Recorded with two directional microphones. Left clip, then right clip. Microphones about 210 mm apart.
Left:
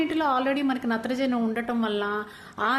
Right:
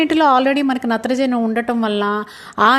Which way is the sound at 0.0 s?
35° right (ahead or behind).